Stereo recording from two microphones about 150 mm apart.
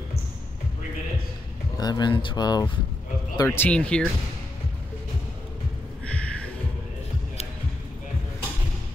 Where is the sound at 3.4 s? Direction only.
15° left (ahead or behind).